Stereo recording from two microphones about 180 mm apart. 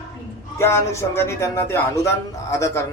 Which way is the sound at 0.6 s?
15° left (ahead or behind).